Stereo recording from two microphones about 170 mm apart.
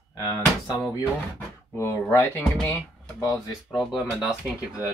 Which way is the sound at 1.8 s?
10° left (ahead or behind).